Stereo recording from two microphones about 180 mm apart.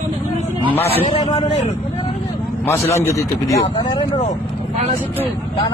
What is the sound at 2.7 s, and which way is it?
Speech, 15° left (ahead or behind).